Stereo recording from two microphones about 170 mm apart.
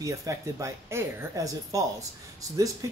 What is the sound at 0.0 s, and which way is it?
Speech, 20° right (ahead or behind).